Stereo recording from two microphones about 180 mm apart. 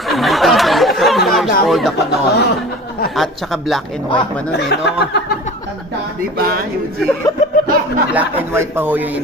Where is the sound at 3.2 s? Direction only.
Centre (ahead or behind).